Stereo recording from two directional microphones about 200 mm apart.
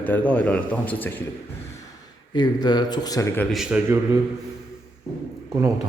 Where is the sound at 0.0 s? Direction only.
10° left (ahead or behind).